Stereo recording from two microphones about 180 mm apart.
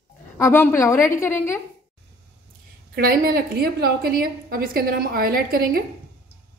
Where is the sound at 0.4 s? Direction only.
10° left (ahead or behind).